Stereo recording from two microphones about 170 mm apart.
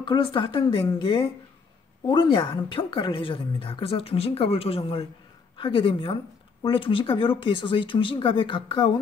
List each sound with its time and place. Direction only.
0.0 s a woman's voice: 30° left (ahead or behind)